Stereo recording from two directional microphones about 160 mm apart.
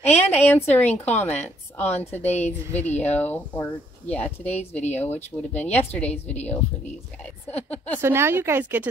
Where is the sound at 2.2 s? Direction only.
45° left (ahead or behind).